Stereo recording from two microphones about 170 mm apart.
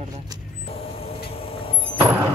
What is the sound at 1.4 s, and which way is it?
Vehicle, 30° left (ahead or behind).